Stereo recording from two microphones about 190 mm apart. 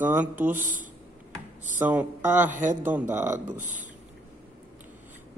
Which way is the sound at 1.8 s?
10° right (ahead or behind).